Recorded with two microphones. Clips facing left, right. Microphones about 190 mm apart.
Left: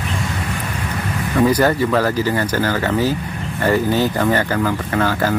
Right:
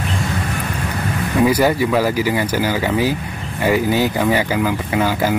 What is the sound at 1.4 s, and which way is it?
Speech, 10° right (ahead or behind).